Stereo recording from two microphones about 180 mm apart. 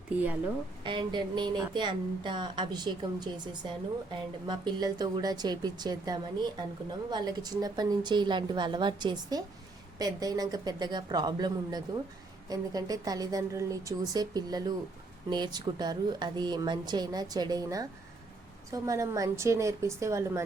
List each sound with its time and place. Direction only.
0.9 s a woman's voice: 25° right (ahead or behind)